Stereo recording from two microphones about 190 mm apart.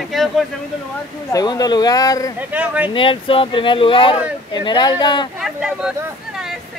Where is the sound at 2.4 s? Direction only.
10° right (ahead or behind).